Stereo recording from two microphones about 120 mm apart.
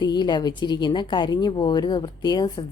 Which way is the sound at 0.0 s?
35° left (ahead or behind).